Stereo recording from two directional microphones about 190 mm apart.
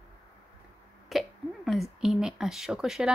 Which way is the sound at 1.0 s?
Centre (ahead or behind).